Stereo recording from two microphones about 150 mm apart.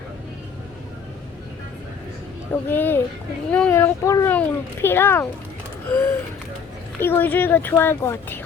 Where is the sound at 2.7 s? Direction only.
15° left (ahead or behind).